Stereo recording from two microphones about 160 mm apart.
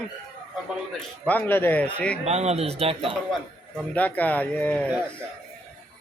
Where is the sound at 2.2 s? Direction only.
40° right (ahead or behind).